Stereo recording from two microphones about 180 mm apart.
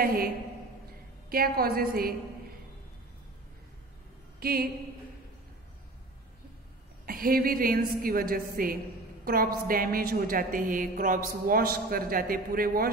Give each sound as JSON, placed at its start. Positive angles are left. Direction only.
{"t": 0.0, "sound": "a woman's voice", "side_deg": -55}
{"t": 1.3, "sound": "a woman's voice", "side_deg": -55}
{"t": 4.4, "sound": "a woman's voice", "side_deg": -55}
{"t": 7.1, "sound": "a woman's voice", "side_deg": -55}